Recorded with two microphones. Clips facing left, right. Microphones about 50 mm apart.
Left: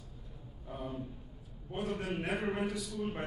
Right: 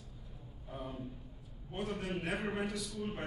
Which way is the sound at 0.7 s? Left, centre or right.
Centre.